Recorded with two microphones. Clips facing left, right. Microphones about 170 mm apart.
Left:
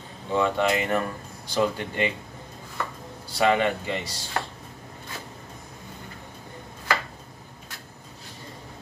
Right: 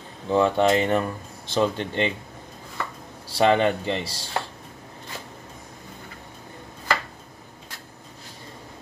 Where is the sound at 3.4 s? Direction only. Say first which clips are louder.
Right 3 dB; 30° right (ahead or behind).